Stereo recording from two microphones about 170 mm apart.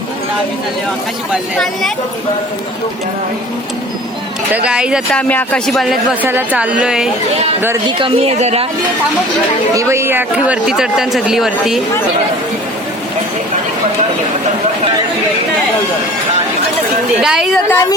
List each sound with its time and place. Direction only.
1.3 s speech: centre (ahead or behind)
4.5 s speech: 5° right (ahead or behind)
5.1 s speech: 10° left (ahead or behind)
6.2 s a woman's voice: 10° right (ahead or behind)
7.9 s a woman's voice: 30° right (ahead or behind)
9.7 s speech: 15° right (ahead or behind)
17.2 s speech: 5° right (ahead or behind)
17.7 s a woman's voice: 15° left (ahead or behind)